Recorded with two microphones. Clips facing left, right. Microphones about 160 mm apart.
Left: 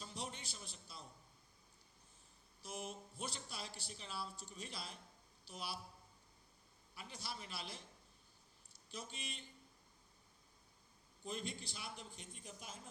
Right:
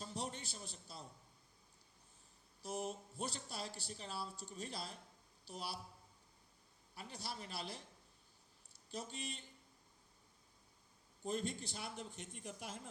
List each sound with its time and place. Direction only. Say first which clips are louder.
0.0 s a sound: right 3 dB; 40° right (ahead or behind)
2.6 s speech: right 5 dB; 40° right (ahead or behind)
6.9 s speech: right 2 dB; 35° right (ahead or behind)
8.9 s speech: right 4 dB; 40° right (ahead or behind)
11.2 s a man's voice: right 5 dB; 45° right (ahead or behind); by 12.8 s 70° right (ahead or behind)